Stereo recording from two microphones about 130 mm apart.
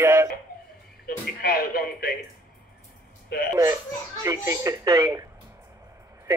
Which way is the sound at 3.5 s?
25° right (ahead or behind).